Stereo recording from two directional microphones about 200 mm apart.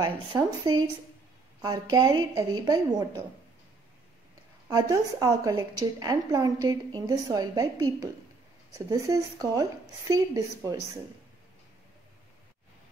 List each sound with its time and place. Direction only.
0.0 s a woman's voice: 20° right (ahead or behind)
4.6 s a woman's voice: 15° right (ahead or behind)